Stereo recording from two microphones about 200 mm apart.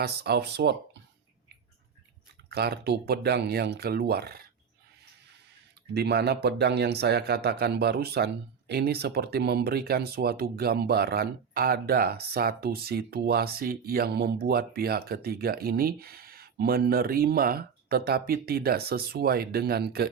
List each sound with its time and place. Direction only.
0.0 s speech: 55° right (ahead or behind)
2.5 s speech: 55° right (ahead or behind)
5.9 s speech: 55° right (ahead or behind)